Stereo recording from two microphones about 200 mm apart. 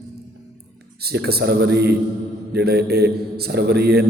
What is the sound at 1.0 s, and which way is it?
A man's voice, 50° right (ahead or behind).